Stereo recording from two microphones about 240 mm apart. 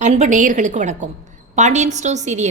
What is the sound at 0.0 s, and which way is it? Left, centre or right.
A woman's voice, right.